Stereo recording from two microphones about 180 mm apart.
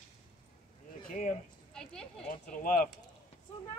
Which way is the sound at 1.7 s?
5° left (ahead or behind).